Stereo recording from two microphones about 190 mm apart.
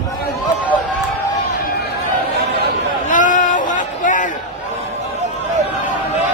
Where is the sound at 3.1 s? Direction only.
45° left (ahead or behind).